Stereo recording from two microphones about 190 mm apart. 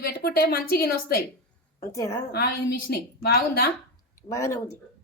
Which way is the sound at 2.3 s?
55° left (ahead or behind).